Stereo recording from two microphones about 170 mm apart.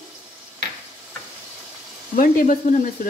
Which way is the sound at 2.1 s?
50° left (ahead or behind).